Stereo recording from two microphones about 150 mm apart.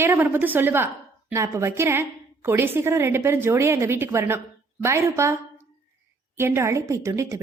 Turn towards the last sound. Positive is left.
turn(degrees=-20)  # may be behind; listen again after turning